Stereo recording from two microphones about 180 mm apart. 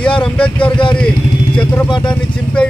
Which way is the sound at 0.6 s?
25° left (ahead or behind).